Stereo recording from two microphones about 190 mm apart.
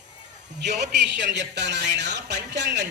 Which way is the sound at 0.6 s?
65° right (ahead or behind).